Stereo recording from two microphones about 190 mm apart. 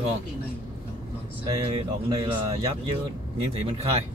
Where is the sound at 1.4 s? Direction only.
30° right (ahead or behind).